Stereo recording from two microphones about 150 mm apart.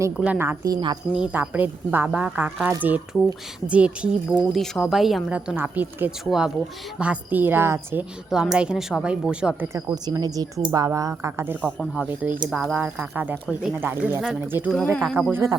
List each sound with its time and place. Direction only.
0.2 s speech: 15° right (ahead or behind)
1.1 s speech: 10° right (ahead or behind)
8.3 s speech: 5° right (ahead or behind)
9.7 s speech: 25° right (ahead or behind); by 12.7 s centre (ahead or behind)
12.7 s speech: 10° right (ahead or behind)
14.9 s speech: 5° left (ahead or behind)
15.3 s speech: 15° right (ahead or behind)